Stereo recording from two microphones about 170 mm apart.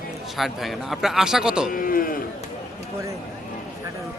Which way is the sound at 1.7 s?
55° left (ahead or behind).